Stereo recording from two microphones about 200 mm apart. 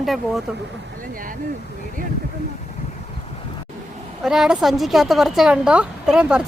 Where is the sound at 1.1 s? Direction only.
45° right (ahead or behind).